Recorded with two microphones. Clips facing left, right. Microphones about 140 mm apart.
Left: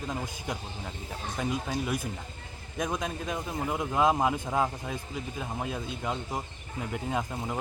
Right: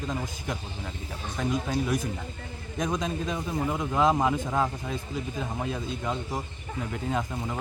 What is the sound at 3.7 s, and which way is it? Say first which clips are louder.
Speech: right 1 dB; 15° left (ahead or behind).